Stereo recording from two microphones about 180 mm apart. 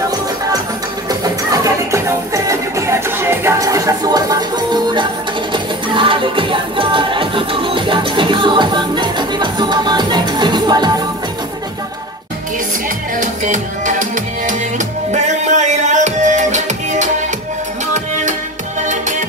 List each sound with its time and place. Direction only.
1.2 s music: 20° right (ahead or behind)
13.2 s music: 45° right (ahead or behind)
18.9 s music: 45° right (ahead or behind)